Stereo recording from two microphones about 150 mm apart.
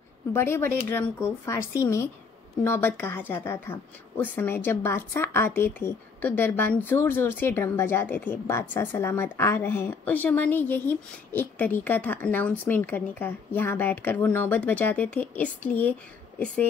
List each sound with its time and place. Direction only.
0.3 s a woman's voice: 15° left (ahead or behind)